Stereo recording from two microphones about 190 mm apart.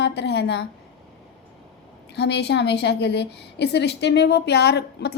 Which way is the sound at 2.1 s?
65° left (ahead or behind).